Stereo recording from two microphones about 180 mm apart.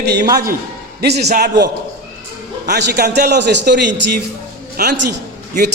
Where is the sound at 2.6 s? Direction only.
65° right (ahead or behind).